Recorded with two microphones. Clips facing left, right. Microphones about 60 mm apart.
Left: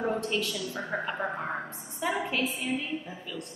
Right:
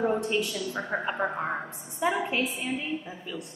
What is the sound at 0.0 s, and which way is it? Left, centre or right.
A woman's voice, centre.